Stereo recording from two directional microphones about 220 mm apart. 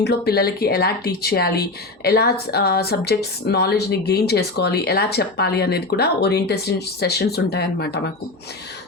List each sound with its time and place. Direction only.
0.0 s speech: 45° left (ahead or behind)